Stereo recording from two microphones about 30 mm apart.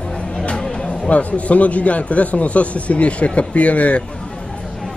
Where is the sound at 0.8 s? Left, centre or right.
Left.